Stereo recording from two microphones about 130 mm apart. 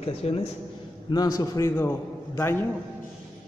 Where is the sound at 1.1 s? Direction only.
30° left (ahead or behind).